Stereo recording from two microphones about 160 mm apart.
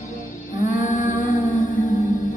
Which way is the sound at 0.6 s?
50° left (ahead or behind).